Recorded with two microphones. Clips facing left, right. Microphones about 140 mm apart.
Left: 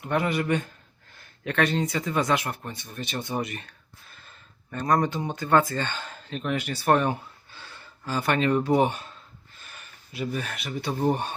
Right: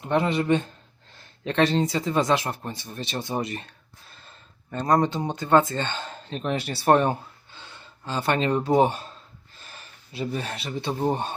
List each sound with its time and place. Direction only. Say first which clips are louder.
0.0 s speech: right 2 dB; 25° right (ahead or behind)
4.7 s speech: right 2 dB; 25° right (ahead or behind)
7.5 s speech: even; 20° right (ahead or behind)